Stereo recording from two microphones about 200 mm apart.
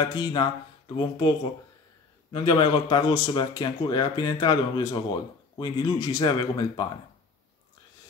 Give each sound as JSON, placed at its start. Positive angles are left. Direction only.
{"t": 0.0, "sound": "a man's voice", "side_deg": 20}
{"t": 2.3, "sound": "a man's voice", "side_deg": 20}